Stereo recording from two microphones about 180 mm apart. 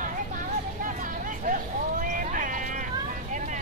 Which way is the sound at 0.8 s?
45° right (ahead or behind).